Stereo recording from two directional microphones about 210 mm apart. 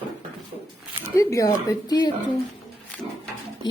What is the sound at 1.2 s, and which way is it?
Speech, 15° left (ahead or behind).